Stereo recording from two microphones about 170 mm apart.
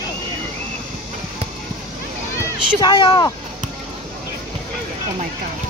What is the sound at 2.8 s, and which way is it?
Speech, 25° left (ahead or behind).